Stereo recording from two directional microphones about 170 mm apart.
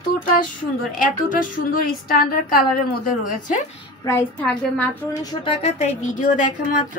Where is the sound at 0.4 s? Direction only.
55° left (ahead or behind).